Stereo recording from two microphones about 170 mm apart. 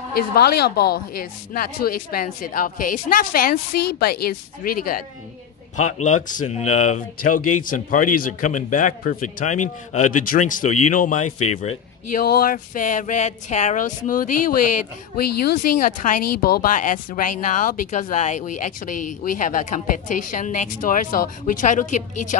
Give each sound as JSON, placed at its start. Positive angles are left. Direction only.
{"t": 0.1, "sound": "a woman's voice", "side_deg": 65}
{"t": 5.8, "sound": "speech", "side_deg": 45}
{"t": 12.1, "sound": "speech", "side_deg": 60}
{"t": 15.1, "sound": "speech", "side_deg": 65}